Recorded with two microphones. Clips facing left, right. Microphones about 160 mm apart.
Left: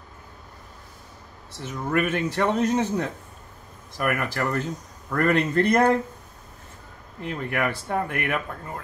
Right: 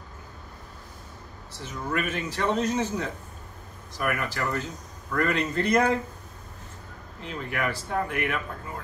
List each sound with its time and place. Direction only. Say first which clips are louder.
1.6 s speech: left 5 dB; 60° left (ahead or behind)
7.2 s speech: left 4 dB; 55° left (ahead or behind)